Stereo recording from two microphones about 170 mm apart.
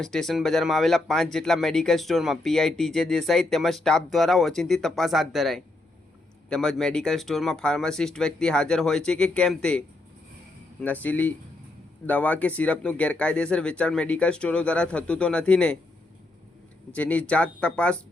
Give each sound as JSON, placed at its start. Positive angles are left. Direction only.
{"t": 0.0, "sound": "speech", "side_deg": 0}
{"t": 16.9, "sound": "speech", "side_deg": 10}